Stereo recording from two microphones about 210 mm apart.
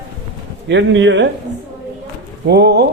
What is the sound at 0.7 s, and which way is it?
Speech, 60° right (ahead or behind).